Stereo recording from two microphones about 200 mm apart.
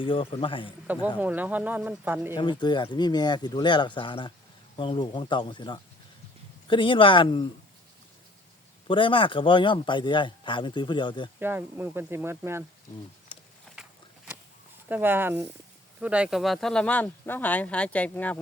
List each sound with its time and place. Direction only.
0.0 s speech: 25° left (ahead or behind)
0.9 s speech: 10° right (ahead or behind)
2.3 s speech: 25° left (ahead or behind)
8.9 s speech: 25° left (ahead or behind)
11.3 s speech: 10° right (ahead or behind)
13.7 s walk: 5° left (ahead or behind)
14.8 s speech: 10° right (ahead or behind); by 18.3 s 5° left (ahead or behind)